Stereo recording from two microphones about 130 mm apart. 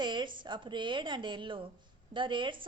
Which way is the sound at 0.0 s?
35° right (ahead or behind).